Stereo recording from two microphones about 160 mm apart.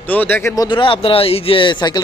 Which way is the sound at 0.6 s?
30° left (ahead or behind).